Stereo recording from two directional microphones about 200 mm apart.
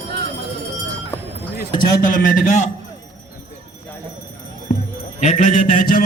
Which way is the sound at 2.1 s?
40° left (ahead or behind).